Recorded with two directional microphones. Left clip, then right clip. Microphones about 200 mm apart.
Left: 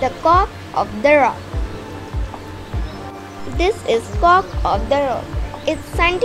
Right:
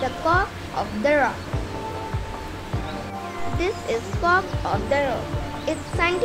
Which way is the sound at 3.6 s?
30° left (ahead or behind).